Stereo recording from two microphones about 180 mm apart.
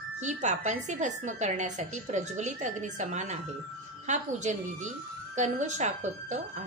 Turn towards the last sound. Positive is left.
turn(degrees=-40)  # may be behind; listen again after turning